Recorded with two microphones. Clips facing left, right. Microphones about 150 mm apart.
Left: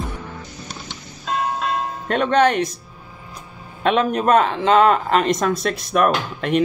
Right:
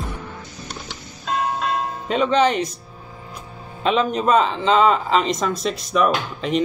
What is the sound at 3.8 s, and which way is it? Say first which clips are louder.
A man's voice: left 1 dB; 55° left (ahead or behind).